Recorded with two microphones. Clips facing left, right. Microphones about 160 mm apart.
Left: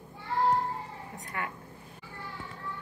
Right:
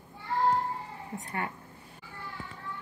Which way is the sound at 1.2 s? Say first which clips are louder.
Right 1 dB; 30° right (ahead or behind).